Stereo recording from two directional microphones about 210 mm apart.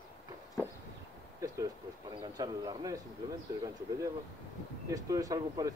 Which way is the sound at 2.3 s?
15° right (ahead or behind).